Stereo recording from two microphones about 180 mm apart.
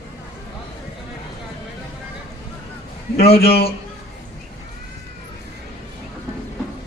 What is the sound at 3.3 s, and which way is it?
Speech, 60° left (ahead or behind).